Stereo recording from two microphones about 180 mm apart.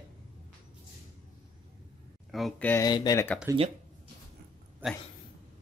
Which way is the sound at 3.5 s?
15° right (ahead or behind).